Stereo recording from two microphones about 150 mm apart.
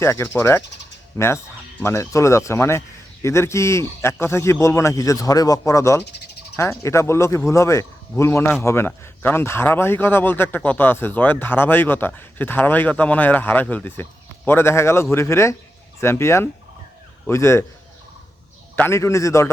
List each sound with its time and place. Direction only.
0.0 s a man's voice: 15° left (ahead or behind)
1.8 s a man's voice: 20° left (ahead or behind)
18.8 s speech: 20° left (ahead or behind)